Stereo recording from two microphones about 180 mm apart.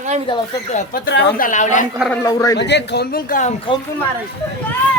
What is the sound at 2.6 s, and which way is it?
Speech, 70° left (ahead or behind).